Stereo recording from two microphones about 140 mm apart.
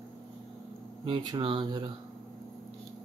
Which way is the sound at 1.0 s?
35° right (ahead or behind).